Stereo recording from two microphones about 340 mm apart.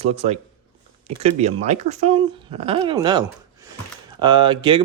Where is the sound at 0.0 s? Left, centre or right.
Centre.